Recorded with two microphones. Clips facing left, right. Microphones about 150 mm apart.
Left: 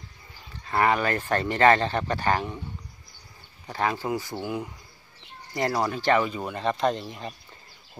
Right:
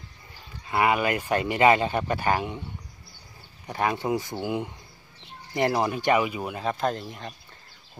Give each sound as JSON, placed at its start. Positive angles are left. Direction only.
{"t": 0.7, "sound": "speech", "side_deg": -10}
{"t": 3.6, "sound": "speech", "side_deg": -20}